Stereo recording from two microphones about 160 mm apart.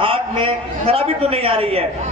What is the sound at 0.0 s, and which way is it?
A man's voice, 35° right (ahead or behind).